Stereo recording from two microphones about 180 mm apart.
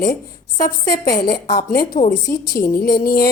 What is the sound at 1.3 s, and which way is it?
A woman's voice, 50° left (ahead or behind).